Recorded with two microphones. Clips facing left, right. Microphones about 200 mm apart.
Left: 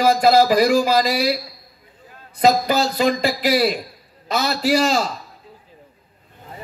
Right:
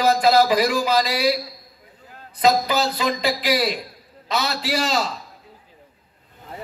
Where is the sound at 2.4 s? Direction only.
45° left (ahead or behind).